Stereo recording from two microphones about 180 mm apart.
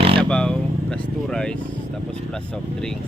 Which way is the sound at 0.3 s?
5° left (ahead or behind).